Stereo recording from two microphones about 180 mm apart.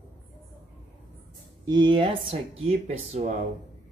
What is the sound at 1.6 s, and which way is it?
Speech, 25° right (ahead or behind).